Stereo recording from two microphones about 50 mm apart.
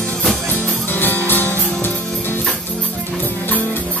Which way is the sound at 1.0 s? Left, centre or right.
Left.